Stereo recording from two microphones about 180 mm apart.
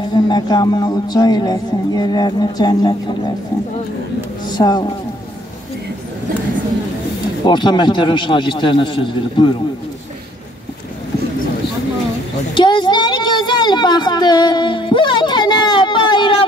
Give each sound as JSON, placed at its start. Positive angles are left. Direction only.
{"t": 0.1, "sound": "speech", "side_deg": 25}
{"t": 4.5, "sound": "speech", "side_deg": 25}
{"t": 7.4, "sound": "speech", "side_deg": 25}
{"t": 12.5, "sound": "a sound", "side_deg": 25}